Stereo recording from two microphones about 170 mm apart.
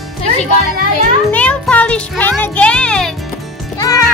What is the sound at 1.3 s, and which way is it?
Speech, 10° left (ahead or behind).